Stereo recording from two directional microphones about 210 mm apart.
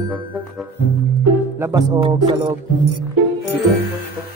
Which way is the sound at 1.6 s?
15° right (ahead or behind).